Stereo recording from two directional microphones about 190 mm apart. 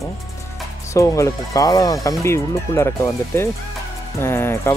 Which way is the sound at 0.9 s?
15° left (ahead or behind).